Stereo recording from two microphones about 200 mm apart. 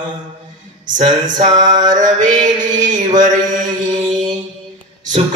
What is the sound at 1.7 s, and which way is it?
Mantra, 20° right (ahead or behind).